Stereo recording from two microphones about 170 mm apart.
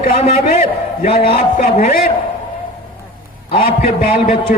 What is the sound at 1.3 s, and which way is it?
Speech, 45° left (ahead or behind).